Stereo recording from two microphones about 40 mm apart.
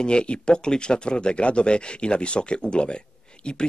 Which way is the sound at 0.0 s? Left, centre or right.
Left.